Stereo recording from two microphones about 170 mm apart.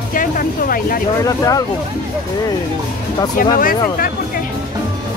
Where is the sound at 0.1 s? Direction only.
55° left (ahead or behind).